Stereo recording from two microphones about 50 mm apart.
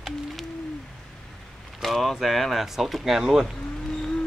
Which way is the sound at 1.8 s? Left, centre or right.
Centre.